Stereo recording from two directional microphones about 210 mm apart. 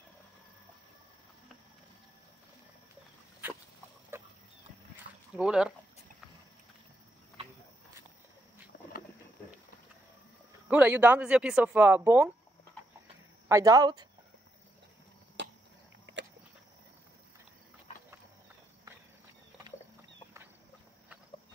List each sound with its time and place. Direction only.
3.4 s dog: 10° right (ahead or behind)
4.1 s horse: 10° right (ahead or behind)
5.3 s speech: 5° right (ahead or behind)
10.7 s speech: 5° right (ahead or behind)
13.5 s speech: 15° right (ahead or behind)
15.4 s a sound: 55° right (ahead or behind)
18.9 s walk: 15° right (ahead or behind)